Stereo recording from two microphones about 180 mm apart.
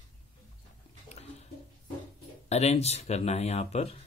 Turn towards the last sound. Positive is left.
turn(degrees=35)  # may be behind; listen again after turning